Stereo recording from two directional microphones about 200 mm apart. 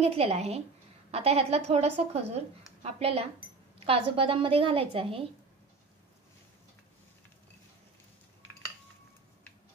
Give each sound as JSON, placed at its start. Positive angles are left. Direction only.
{"t": 0.0, "sound": "a woman's voice", "side_deg": -30}